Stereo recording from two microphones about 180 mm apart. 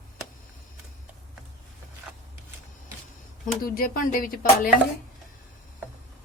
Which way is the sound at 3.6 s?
50° left (ahead or behind).